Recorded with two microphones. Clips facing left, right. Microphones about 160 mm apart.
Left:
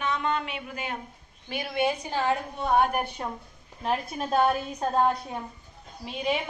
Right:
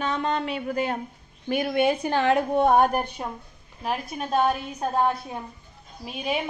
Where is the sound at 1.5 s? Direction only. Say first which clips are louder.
Right 5 dB; 55° right (ahead or behind).